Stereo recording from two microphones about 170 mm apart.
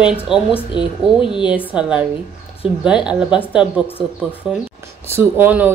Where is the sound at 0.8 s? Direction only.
30° left (ahead or behind).